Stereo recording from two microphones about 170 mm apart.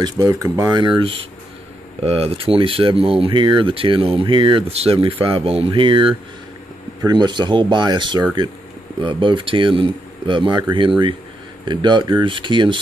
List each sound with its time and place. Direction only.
0.0 s speech: 20° right (ahead or behind)